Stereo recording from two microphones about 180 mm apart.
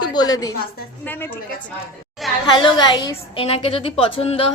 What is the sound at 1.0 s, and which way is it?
Speech, 10° left (ahead or behind).